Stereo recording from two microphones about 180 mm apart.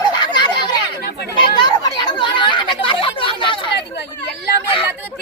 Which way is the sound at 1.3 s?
25° left (ahead or behind).